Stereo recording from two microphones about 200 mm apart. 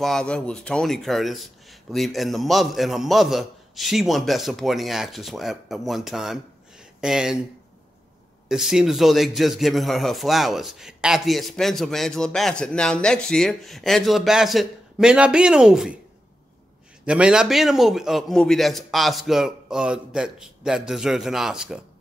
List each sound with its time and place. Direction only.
0.0 s a man's voice: 5° left (ahead or behind)
8.5 s a man's voice: 5° right (ahead or behind)
17.0 s a man's voice: 5° right (ahead or behind)